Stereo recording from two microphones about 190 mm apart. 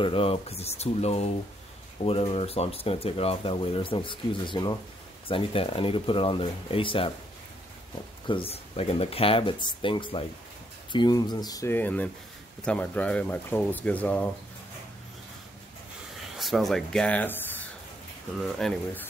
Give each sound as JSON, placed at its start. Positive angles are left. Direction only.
{"t": 0.0, "sound": "speech", "side_deg": 30}
{"t": 8.3, "sound": "speech", "side_deg": 30}
{"t": 16.3, "sound": "speech", "side_deg": 0}